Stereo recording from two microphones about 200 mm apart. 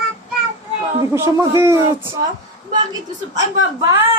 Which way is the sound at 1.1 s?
15° right (ahead or behind).